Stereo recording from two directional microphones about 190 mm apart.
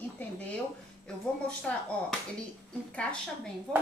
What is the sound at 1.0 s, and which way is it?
Speech, 5° left (ahead or behind).